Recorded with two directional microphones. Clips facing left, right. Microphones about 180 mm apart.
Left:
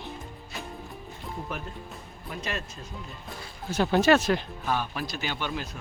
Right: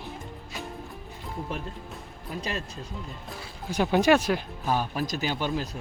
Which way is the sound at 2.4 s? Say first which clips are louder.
Right 2 dB; 35° right (ahead or behind).